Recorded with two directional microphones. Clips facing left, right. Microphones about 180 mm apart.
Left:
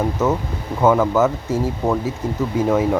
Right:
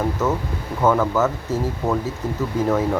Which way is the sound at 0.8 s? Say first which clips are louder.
Left 3 dB; 15° left (ahead or behind).